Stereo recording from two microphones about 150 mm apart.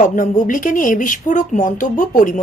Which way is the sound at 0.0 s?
60° left (ahead or behind).